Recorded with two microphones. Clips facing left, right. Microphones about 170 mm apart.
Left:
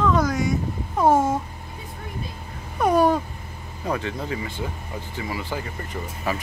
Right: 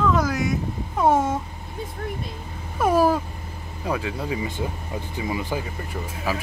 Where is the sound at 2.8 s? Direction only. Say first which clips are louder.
Even; 5° right (ahead or behind).